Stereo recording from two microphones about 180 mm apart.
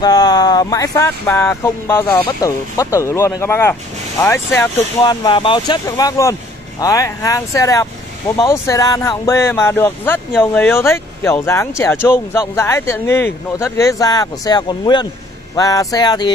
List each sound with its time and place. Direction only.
0.0 s speech: 20° left (ahead or behind)